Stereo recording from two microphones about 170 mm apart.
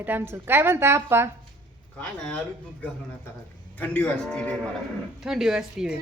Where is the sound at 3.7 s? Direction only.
10° left (ahead or behind).